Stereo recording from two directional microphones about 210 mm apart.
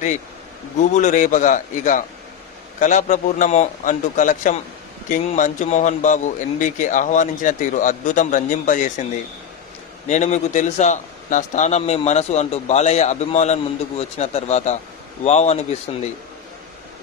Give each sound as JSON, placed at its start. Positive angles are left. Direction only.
{"t": 0.7, "sound": "a man's voice", "side_deg": 35}
{"t": 10.0, "sound": "a man's voice", "side_deg": 35}